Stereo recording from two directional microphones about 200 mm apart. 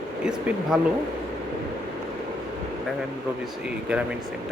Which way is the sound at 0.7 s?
Centre (ahead or behind).